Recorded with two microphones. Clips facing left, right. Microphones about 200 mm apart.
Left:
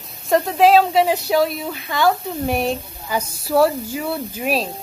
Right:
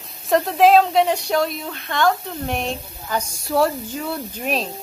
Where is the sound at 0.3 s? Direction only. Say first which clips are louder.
Even; centre (ahead or behind).